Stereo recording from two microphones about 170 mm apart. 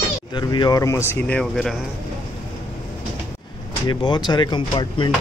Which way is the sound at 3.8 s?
25° left (ahead or behind).